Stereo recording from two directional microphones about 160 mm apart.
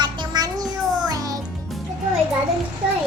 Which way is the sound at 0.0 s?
25° right (ahead or behind).